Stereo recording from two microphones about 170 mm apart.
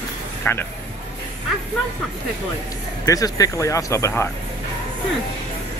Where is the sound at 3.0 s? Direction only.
20° left (ahead or behind).